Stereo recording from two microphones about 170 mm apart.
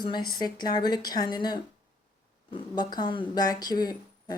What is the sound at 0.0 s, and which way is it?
Speech, 25° left (ahead or behind).